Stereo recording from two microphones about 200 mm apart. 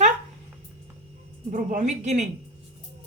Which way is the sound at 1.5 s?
40° right (ahead or behind).